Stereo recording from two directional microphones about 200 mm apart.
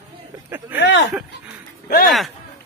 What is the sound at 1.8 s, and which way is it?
Speech, 50° left (ahead or behind).